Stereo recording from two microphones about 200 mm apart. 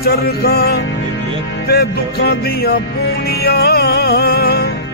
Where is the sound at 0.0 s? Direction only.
50° left (ahead or behind).